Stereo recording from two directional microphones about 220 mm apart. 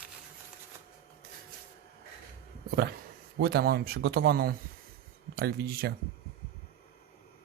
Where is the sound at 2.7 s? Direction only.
45° right (ahead or behind).